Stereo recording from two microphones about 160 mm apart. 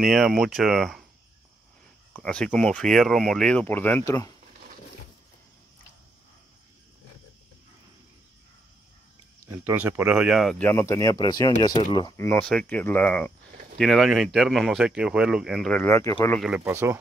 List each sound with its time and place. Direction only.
0.0 s speech: centre (ahead or behind)
2.1 s speech: 5° left (ahead or behind)
9.5 s speech: 15° right (ahead or behind)
10.7 s speech: 20° left (ahead or behind)
12.2 s speech: 10° left (ahead or behind)
15.9 s speech: 20° left (ahead or behind)
16.3 s speech: 5° right (ahead or behind)
16.6 s speech: 15° right (ahead or behind)